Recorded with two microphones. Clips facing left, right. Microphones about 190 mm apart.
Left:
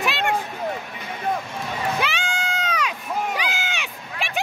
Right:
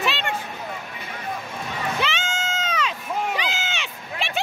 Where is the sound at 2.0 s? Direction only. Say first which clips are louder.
Left 1 dB; 10° left (ahead or behind).